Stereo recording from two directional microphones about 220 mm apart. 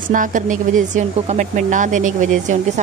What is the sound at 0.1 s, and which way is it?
Speech, 35° right (ahead or behind).